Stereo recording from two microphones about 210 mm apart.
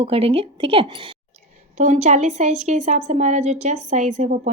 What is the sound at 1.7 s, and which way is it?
A woman's voice, 35° right (ahead or behind).